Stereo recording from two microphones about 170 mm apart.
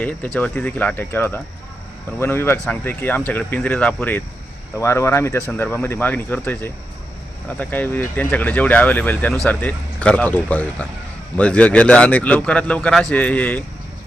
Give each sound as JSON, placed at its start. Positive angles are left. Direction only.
{"t": 0.0, "sound": "speech", "side_deg": 5}